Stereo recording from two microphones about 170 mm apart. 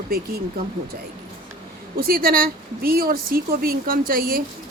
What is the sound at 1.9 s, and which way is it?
A woman's voice, 60° right (ahead or behind).